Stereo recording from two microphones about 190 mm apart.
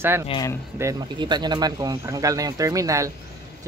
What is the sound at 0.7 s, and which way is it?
Speech, 20° right (ahead or behind).